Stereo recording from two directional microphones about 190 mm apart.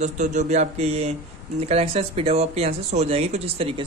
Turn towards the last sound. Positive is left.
turn(degrees=-30)  # may be behind; listen again after turning